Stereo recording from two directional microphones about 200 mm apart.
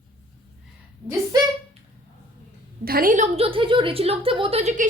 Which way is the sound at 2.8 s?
45° right (ahead or behind).